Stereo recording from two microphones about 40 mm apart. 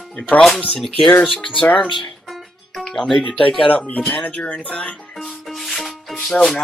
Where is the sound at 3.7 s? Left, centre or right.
Left.